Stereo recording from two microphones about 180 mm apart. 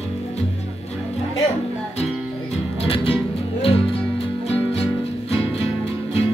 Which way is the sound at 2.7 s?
30° left (ahead or behind).